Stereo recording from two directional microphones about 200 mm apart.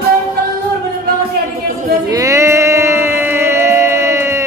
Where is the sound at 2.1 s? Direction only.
15° right (ahead or behind).